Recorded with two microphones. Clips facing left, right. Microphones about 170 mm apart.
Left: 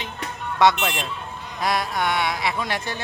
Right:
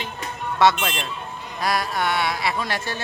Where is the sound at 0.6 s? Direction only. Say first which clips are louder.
Even; 15° left (ahead or behind).